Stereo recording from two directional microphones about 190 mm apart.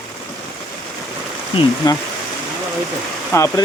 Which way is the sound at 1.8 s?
20° left (ahead or behind).